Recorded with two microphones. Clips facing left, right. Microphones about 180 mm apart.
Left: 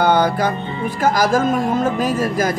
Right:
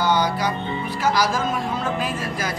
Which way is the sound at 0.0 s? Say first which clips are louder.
Left 5 dB; 55° left (ahead or behind).